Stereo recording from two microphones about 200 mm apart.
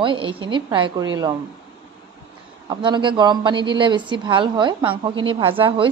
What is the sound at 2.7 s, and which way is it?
A woman's voice, 25° right (ahead or behind).